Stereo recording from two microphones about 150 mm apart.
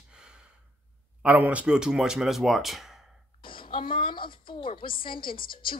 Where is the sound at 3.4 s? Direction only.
35° left (ahead or behind).